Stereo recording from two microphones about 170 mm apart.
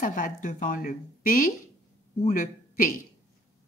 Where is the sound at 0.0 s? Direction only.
50° left (ahead or behind).